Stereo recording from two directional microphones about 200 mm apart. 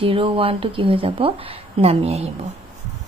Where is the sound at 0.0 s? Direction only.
30° right (ahead or behind).